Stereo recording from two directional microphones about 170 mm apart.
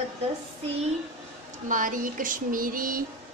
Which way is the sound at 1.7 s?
50° right (ahead or behind).